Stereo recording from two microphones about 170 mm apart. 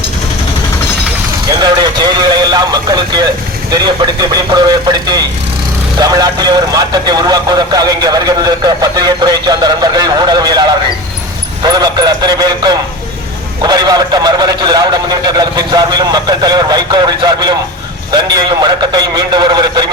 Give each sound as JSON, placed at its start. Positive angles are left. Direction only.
{"t": 1.5, "sound": "vehicle", "side_deg": -25}
{"t": 3.7, "sound": "speech", "side_deg": -25}